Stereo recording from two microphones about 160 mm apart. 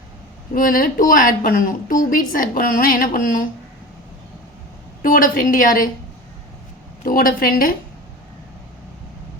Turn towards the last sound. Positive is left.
turn(degrees=65)  # may be behind; listen again after turning